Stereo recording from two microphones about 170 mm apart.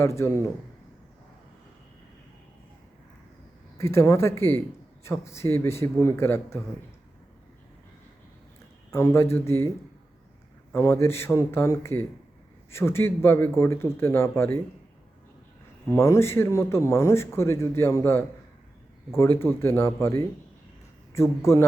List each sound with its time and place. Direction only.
0.0 s a man's voice: 15° left (ahead or behind)
3.8 s a man's voice: 15° left (ahead or behind)
8.9 s a man's voice: 15° left (ahead or behind)
15.9 s a man's voice: 15° left (ahead or behind)